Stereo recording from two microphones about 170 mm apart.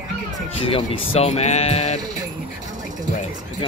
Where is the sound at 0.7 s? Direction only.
35° left (ahead or behind).